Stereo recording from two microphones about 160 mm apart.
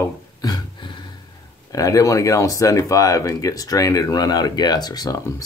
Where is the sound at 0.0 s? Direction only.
25° left (ahead or behind).